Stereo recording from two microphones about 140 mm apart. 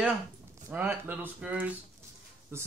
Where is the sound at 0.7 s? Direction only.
15° right (ahead or behind).